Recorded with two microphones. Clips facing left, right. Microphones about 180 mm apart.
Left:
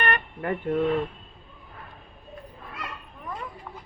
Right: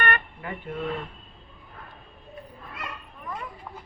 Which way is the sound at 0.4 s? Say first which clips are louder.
Left 13 dB; 55° left (ahead or behind).